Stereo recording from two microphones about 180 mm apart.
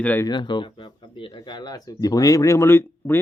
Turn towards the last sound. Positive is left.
turn(degrees=15)  # may be behind; listen again after turning